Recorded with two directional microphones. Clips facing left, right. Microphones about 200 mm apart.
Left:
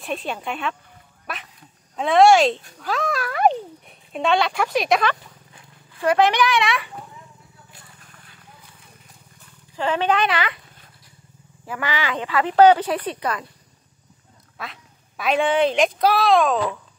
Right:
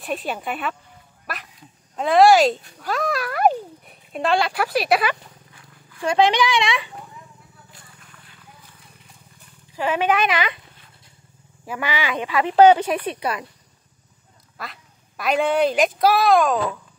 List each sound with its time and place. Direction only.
0.0 s a child's voice: centre (ahead or behind)
6.0 s speech: 15° right (ahead or behind)
9.8 s speech: 10° right (ahead or behind)
11.6 s speech: 15° right (ahead or behind)
12.9 s speech: 10° right (ahead or behind)
14.6 s a child's voice: centre (ahead or behind)